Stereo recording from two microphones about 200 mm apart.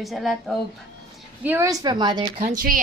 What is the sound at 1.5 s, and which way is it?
Speech, 15° right (ahead or behind).